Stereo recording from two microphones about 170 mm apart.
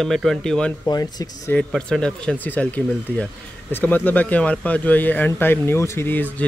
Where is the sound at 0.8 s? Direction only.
20° left (ahead or behind).